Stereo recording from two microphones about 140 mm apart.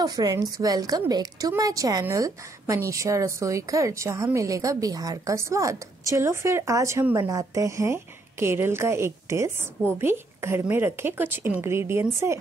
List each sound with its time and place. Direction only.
0.0 s a woman's voice: 25° right (ahead or behind)